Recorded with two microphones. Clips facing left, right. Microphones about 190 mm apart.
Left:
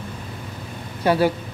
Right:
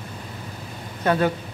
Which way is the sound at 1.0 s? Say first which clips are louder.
Left 2 dB; 10° left (ahead or behind).